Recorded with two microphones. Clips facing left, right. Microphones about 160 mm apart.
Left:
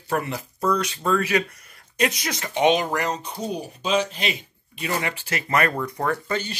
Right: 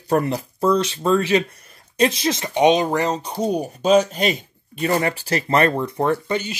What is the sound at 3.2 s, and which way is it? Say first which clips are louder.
Speech: right 7 dB; 40° right (ahead or behind).